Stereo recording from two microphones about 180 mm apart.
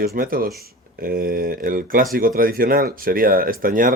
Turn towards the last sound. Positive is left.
turn(degrees=-50)  # may be behind; listen again after turning